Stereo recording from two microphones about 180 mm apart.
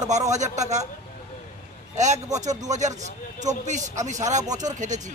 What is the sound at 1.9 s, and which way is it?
A man's voice, 40° right (ahead or behind).